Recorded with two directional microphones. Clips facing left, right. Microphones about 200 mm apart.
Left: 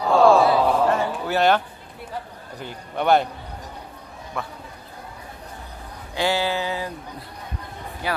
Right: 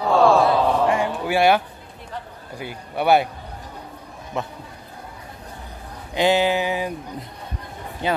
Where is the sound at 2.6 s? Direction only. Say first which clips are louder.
Right 1 dB; 10° right (ahead or behind).